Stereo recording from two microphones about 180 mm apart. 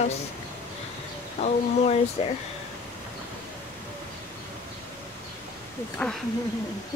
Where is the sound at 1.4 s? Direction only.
35° left (ahead or behind).